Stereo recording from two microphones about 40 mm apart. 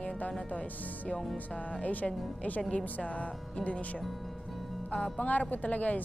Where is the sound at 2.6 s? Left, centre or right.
Left.